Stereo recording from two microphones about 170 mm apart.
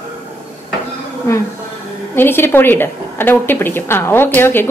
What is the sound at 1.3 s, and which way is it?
A woman's voice, 15° left (ahead or behind).